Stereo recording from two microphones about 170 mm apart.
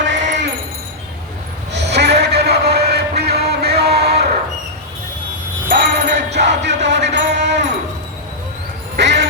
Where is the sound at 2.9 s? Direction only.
70° right (ahead or behind).